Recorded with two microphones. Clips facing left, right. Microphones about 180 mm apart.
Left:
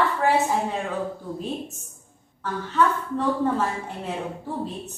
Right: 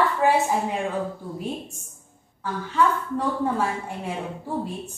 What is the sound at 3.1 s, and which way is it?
A woman's voice, 10° right (ahead or behind).